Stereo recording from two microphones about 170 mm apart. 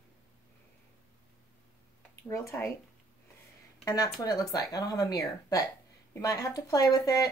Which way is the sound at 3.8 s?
20° left (ahead or behind).